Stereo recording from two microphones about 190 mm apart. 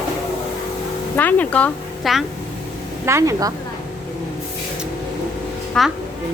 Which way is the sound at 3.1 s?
15° right (ahead or behind).